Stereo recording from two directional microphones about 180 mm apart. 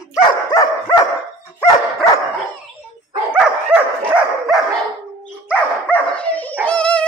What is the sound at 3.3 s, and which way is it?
Dog, 5° right (ahead or behind).